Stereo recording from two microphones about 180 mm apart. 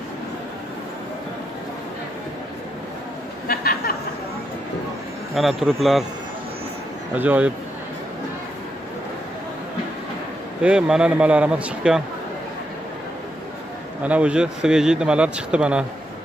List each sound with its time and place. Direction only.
3.4 s a sound: 55° left (ahead or behind)
5.3 s speech: centre (ahead or behind)
7.2 s speech: 10° right (ahead or behind)
10.6 s speech: 5° right (ahead or behind)
14.0 s speech: 5° right (ahead or behind)